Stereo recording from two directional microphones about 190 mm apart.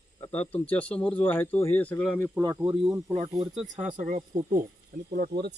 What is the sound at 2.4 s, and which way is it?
Speech, 15° right (ahead or behind).